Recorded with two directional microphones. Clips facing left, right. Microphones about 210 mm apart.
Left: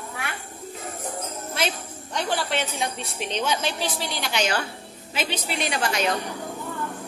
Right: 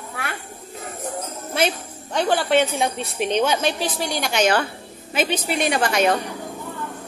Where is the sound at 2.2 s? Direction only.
55° right (ahead or behind).